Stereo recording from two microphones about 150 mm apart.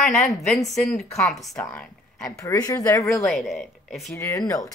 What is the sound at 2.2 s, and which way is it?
Speech, 20° left (ahead or behind).